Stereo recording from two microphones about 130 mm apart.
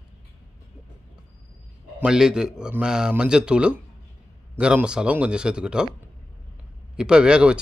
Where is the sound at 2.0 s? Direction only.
5° right (ahead or behind).